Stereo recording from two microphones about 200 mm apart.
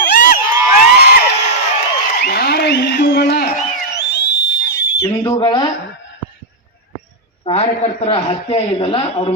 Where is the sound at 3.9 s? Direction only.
55° left (ahead or behind).